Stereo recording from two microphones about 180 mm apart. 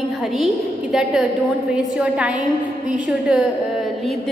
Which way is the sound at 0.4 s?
Centre (ahead or behind).